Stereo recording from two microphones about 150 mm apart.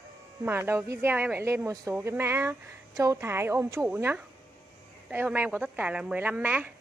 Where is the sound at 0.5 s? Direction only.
15° right (ahead or behind).